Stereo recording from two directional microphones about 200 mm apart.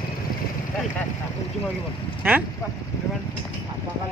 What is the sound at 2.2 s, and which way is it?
Speech, 10° right (ahead or behind).